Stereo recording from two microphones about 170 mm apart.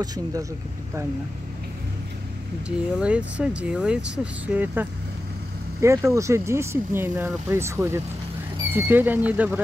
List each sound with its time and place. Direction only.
0.0 s speech: 20° right (ahead or behind)
3.0 s speech: 5° right (ahead or behind)